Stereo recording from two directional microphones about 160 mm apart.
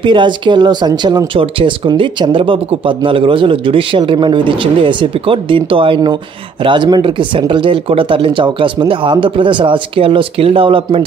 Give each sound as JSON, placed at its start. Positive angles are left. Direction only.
{"t": 0.0, "sound": "speech", "side_deg": -30}